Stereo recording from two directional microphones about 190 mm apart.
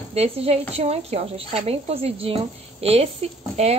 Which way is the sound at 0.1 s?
30° right (ahead or behind).